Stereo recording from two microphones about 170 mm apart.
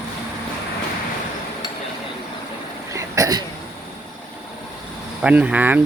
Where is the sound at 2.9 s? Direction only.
20° right (ahead or behind).